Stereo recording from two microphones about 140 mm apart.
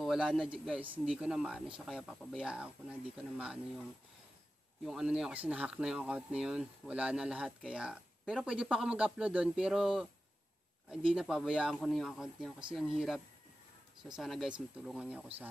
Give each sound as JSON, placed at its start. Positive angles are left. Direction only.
{"t": 0.0, "sound": "speech", "side_deg": -5}
{"t": 4.8, "sound": "speech", "side_deg": -5}